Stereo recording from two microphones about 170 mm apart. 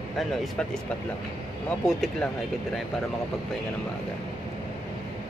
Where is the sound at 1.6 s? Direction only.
5° left (ahead or behind).